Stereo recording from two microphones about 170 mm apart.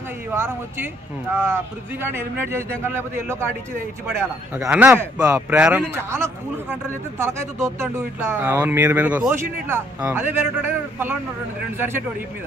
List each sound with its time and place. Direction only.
0.3 s speech: 15° right (ahead or behind)
5.6 s speech: 10° right (ahead or behind)